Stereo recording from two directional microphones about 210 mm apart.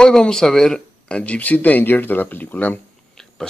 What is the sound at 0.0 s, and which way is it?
Speech, 5° left (ahead or behind).